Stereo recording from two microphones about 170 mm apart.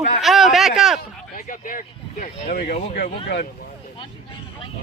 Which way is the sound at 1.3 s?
55° left (ahead or behind).